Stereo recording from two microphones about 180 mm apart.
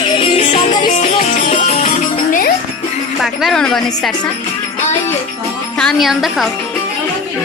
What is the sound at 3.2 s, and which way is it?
Music, centre (ahead or behind).